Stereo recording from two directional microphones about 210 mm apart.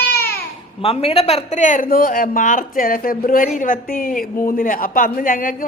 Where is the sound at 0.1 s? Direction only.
50° left (ahead or behind).